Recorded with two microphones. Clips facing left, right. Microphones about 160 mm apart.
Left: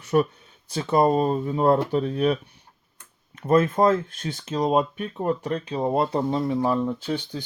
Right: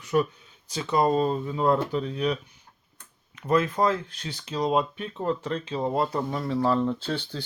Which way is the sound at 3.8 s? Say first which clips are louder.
Left 5 dB; 50° left (ahead or behind).